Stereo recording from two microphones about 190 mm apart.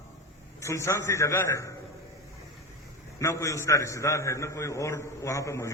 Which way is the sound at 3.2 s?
15° left (ahead or behind).